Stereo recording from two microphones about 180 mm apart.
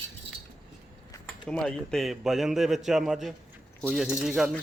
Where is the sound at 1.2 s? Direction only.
5° left (ahead or behind).